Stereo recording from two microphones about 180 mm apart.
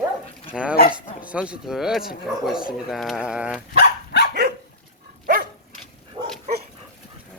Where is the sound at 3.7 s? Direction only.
70° left (ahead or behind).